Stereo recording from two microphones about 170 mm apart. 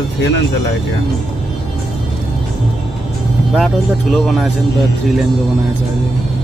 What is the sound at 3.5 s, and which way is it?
Speech, centre (ahead or behind).